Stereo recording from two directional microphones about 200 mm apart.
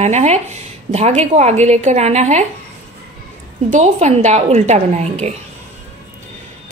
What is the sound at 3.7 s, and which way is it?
A woman's voice, 35° right (ahead or behind).